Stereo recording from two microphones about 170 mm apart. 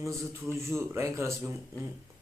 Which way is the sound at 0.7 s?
15° right (ahead or behind).